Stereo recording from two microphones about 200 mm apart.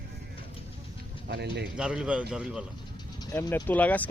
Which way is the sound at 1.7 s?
5° right (ahead or behind).